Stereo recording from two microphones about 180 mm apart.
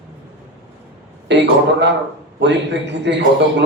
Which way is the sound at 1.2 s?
75° right (ahead or behind).